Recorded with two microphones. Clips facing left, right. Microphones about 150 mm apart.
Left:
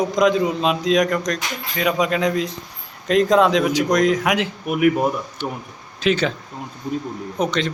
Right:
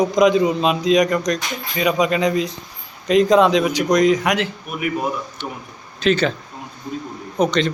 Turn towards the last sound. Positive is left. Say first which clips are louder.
# right 3 dB
turn(degrees=5)  # may be behind; listen again after turning